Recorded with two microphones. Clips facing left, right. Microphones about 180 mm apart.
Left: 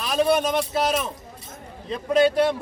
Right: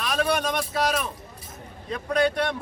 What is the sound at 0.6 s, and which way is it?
Speech, 25° left (ahead or behind).